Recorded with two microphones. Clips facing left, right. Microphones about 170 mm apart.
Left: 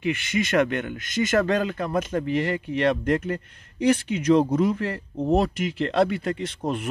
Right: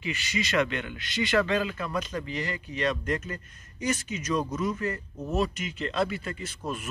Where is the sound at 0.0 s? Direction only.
55° left (ahead or behind).